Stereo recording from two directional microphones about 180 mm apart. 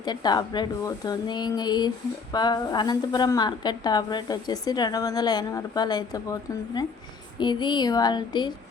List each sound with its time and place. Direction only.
0.0 s a woman's voice: 25° left (ahead or behind)